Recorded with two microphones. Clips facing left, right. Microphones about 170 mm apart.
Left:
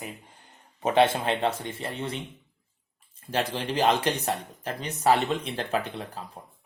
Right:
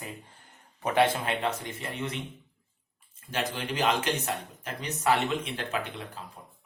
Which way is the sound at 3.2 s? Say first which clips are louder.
Left 4 dB; 30° left (ahead or behind).